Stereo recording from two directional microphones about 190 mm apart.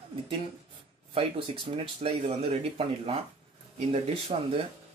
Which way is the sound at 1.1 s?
30° right (ahead or behind).